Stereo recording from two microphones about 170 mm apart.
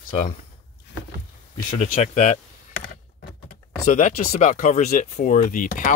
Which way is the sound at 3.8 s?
45° left (ahead or behind).